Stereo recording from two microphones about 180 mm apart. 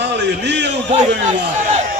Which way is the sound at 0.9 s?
40° right (ahead or behind).